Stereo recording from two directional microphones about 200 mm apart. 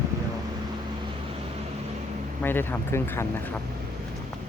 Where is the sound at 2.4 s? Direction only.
10° left (ahead or behind).